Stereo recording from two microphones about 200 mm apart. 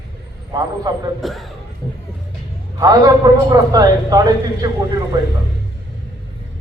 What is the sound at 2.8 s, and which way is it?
A man's voice, 20° right (ahead or behind).